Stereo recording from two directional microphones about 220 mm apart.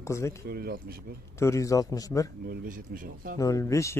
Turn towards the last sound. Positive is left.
turn(degrees=15)  # may be behind; listen again after turning